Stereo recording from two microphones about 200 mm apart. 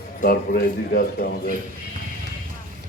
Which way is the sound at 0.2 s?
50° left (ahead or behind).